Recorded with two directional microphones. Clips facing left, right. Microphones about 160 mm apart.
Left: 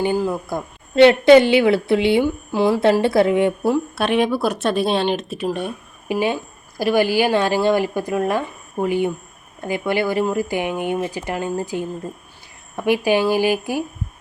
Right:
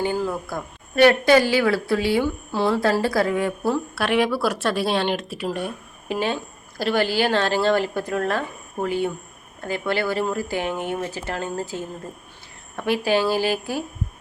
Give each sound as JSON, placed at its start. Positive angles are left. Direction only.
{"t": 0.0, "sound": "a woman's voice", "side_deg": 15}